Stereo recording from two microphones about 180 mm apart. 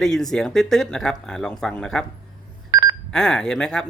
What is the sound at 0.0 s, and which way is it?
Speech, 5° left (ahead or behind).